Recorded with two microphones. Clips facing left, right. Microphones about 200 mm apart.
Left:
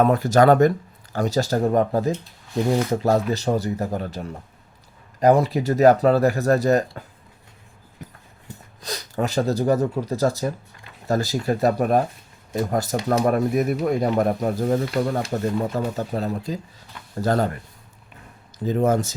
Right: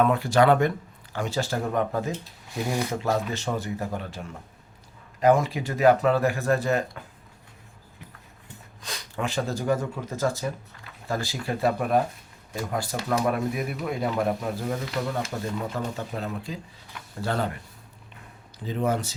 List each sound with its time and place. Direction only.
0.0 s speech: 40° left (ahead or behind)
8.4 s speech: 40° left (ahead or behind)
18.6 s speech: 45° left (ahead or behind)